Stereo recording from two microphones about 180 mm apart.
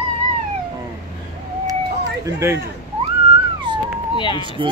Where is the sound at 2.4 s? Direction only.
15° right (ahead or behind).